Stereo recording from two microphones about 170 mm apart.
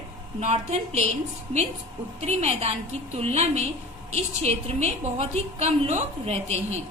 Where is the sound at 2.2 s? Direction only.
40° right (ahead or behind).